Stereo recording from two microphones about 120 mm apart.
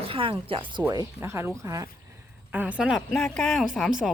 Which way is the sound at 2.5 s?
10° right (ahead or behind).